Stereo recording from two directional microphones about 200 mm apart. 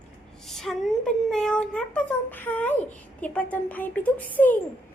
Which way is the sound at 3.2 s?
5° left (ahead or behind).